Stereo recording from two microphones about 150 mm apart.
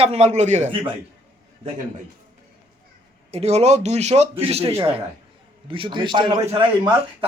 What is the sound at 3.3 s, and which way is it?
A man's voice, 45° right (ahead or behind).